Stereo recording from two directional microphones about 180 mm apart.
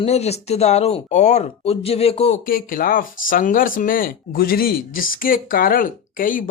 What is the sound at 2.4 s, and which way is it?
Speech, 50° left (ahead or behind).